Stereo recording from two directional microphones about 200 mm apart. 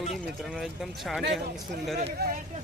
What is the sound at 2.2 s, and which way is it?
Speech, 45° right (ahead or behind).